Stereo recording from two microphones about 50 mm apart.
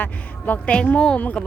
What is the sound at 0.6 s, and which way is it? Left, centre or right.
Speech, left.